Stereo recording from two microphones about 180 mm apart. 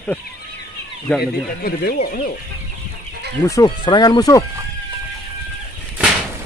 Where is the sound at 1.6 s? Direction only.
55° left (ahead or behind).